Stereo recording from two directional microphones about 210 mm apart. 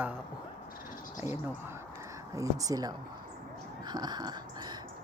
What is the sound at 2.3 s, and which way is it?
Speech, 15° right (ahead or behind).